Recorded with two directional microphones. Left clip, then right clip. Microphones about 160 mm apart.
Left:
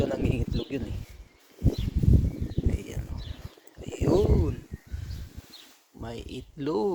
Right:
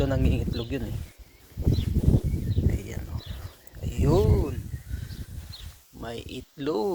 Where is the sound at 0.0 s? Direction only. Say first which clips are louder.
Right 1 dB; 20° left (ahead or behind).